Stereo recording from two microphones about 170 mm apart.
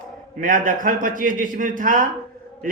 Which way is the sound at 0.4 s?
55° right (ahead or behind).